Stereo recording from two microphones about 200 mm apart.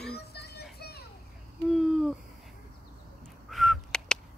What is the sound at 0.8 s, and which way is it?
Children playing, 55° left (ahead or behind).